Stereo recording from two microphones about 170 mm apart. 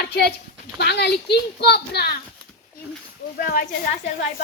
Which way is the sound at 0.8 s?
85° left.